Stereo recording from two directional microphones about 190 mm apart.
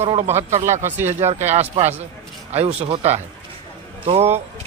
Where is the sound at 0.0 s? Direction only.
30° right (ahead or behind).